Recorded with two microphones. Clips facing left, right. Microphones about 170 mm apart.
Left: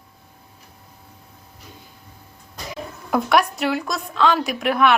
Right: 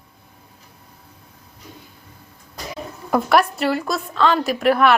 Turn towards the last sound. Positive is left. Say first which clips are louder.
# right 3 dB
turn(degrees=0)  # may be behind; listen again after turning